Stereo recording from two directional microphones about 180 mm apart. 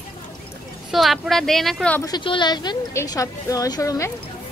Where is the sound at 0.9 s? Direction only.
Centre (ahead or behind).